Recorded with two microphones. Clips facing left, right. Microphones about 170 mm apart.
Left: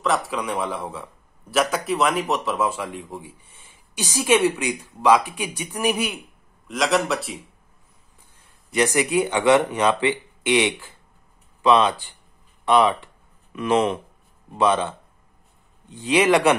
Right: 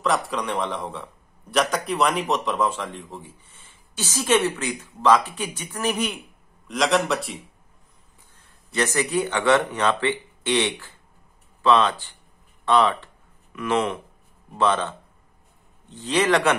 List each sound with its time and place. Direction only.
0.0 s a man's voice: centre (ahead or behind)
8.6 s speech: 15° left (ahead or behind)